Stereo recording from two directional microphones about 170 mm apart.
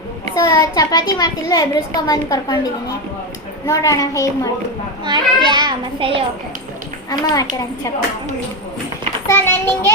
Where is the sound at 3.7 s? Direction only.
20° left (ahead or behind).